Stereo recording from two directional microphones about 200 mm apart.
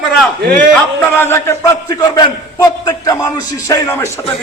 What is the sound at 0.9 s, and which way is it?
A man's voice, 10° left (ahead or behind).